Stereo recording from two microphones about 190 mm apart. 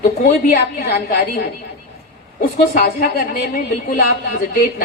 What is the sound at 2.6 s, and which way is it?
A woman's voice, 50° left (ahead or behind).